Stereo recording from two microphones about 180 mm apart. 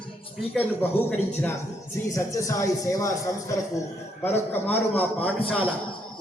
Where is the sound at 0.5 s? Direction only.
10° left (ahead or behind).